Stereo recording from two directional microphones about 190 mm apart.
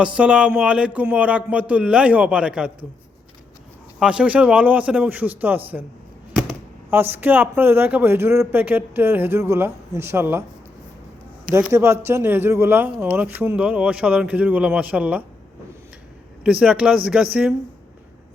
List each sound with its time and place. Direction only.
0.0 s speech: 5° right (ahead or behind)
4.0 s speech: 5° right (ahead or behind)
11.7 s speech: 15° right (ahead or behind)
16.4 s speech: 5° right (ahead or behind)